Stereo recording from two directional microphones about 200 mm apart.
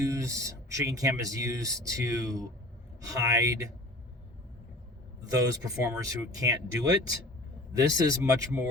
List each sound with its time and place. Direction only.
0.0 s speech: 15° right (ahead or behind)
5.3 s speech: 15° right (ahead or behind)